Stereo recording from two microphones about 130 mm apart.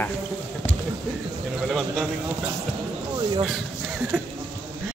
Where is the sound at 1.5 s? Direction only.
Centre (ahead or behind).